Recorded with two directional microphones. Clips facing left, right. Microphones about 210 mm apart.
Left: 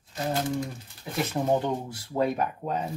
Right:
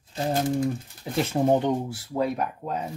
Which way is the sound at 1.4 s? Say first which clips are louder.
Right 4 dB; 20° right (ahead or behind).